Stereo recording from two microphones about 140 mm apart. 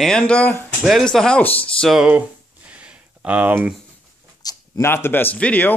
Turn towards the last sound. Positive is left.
turn(degrees=10)  # may be behind; listen again after turning